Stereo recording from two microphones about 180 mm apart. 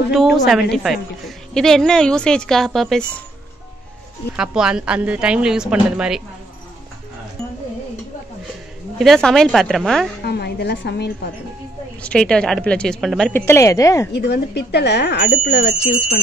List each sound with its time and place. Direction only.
0.1 s a woman's voice: centre (ahead or behind)
4.4 s a woman's voice: 5° right (ahead or behind)
8.9 s a woman's voice: centre (ahead or behind)
10.2 s a woman's voice: 65° left (ahead or behind)
12.0 s a woman's voice: 5° left (ahead or behind)
13.3 s a woman's voice: 15° left (ahead or behind)
14.1 s speech: 70° left (ahead or behind)